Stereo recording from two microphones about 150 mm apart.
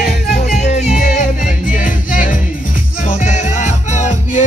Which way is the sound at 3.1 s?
50° left (ahead or behind).